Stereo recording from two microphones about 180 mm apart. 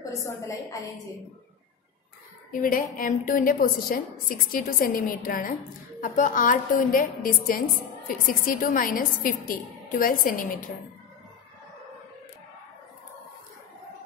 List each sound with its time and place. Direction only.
0.2 s a woman's voice: 15° left (ahead or behind)
2.6 s a woman's voice: 50° left (ahead or behind)